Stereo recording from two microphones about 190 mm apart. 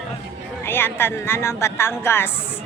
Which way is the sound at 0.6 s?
10° left (ahead or behind).